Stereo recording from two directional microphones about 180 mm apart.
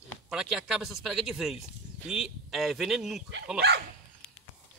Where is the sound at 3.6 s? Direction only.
65° right (ahead or behind).